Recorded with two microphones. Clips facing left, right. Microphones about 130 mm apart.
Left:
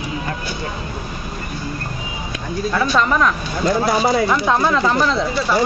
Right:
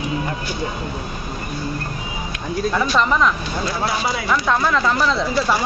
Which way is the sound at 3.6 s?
45° left (ahead or behind).